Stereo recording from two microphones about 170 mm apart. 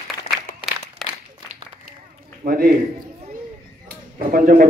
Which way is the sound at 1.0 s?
Centre (ahead or behind).